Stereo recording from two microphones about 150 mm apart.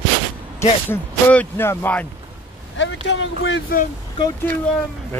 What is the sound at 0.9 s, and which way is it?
Speech, 15° left (ahead or behind).